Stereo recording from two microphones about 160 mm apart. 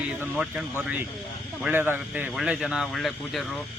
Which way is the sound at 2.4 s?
5° right (ahead or behind).